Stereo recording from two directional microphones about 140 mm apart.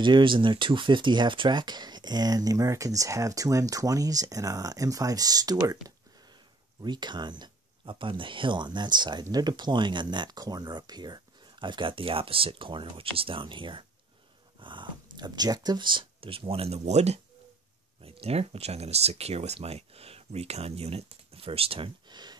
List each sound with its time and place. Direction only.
0.0 s speech: 35° right (ahead or behind)
14.6 s dog: 35° right (ahead or behind)
15.1 s speech: 30° right (ahead or behind)